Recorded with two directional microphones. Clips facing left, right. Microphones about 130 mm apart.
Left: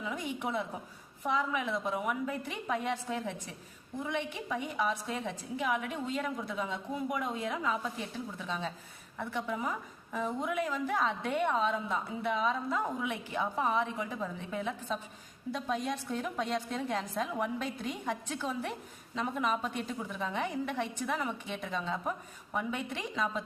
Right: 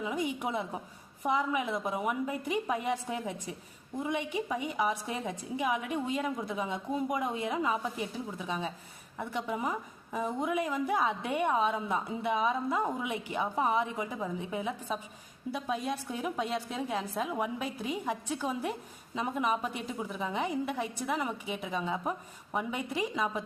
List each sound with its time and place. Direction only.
0.0 s a woman's voice: 15° right (ahead or behind)